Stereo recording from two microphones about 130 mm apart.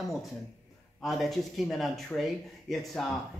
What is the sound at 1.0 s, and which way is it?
Speech, centre (ahead or behind).